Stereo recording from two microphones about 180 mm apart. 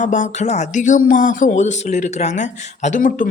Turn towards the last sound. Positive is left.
turn(degrees=50)  # may be behind; listen again after turning